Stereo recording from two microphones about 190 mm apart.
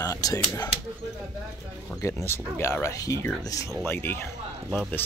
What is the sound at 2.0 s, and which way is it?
Speech, 15° left (ahead or behind).